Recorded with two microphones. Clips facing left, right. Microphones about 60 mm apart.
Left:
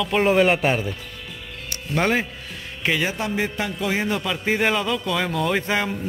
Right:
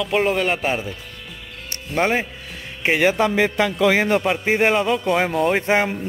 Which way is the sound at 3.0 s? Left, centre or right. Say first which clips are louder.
Right 7 dB; right.